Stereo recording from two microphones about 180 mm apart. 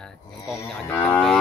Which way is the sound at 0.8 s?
10° left (ahead or behind).